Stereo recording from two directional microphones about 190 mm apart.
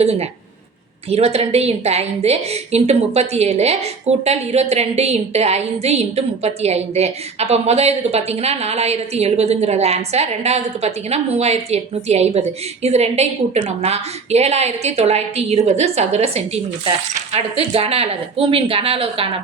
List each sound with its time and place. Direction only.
0.0 s a woman's voice: 35° right (ahead or behind)